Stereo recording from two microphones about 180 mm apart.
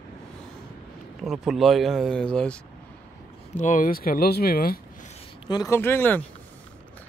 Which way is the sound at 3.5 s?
45° left (ahead or behind).